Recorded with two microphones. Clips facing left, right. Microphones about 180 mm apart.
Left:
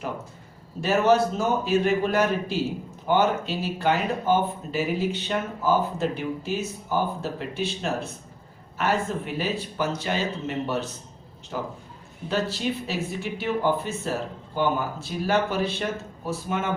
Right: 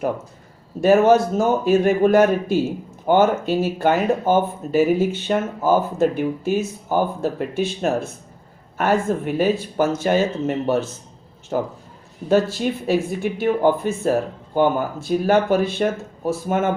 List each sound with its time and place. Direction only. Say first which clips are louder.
0.8 s speech: right 6 dB; 50° right (ahead or behind)